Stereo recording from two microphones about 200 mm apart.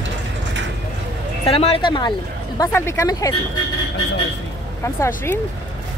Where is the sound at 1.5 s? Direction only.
30° left (ahead or behind).